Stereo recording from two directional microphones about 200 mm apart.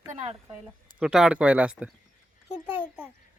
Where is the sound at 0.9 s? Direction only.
5° right (ahead or behind).